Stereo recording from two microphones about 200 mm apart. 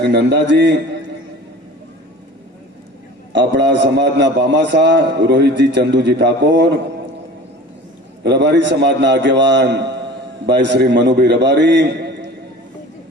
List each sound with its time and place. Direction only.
0.0 s a man's voice: 60° right (ahead or behind)
3.3 s a man's voice: 60° right (ahead or behind)
8.2 s a man's voice: 60° right (ahead or behind)